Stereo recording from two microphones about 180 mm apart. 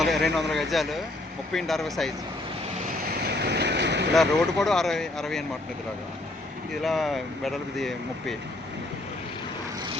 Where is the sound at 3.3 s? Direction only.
65° right (ahead or behind).